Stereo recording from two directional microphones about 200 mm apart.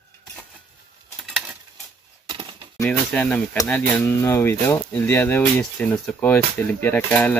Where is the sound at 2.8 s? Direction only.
5° left (ahead or behind).